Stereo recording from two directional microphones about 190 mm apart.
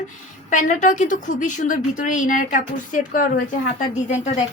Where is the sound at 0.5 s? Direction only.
40° left (ahead or behind).